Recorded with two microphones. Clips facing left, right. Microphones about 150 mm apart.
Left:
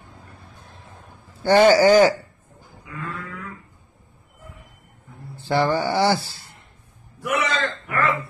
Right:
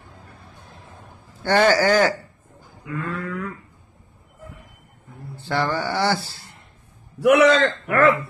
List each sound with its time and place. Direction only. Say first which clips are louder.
1.4 s speech: left 4 dB; 15° left (ahead or behind)
2.8 s livestock: right 5 dB; 60° right (ahead or behind)
5.5 s speech: left 3 dB; 15° left (ahead or behind)
7.2 s a man's voice: right 10 dB; 70° right (ahead or behind)